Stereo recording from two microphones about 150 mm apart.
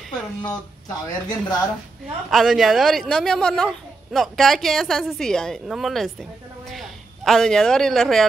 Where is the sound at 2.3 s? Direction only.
Centre (ahead or behind).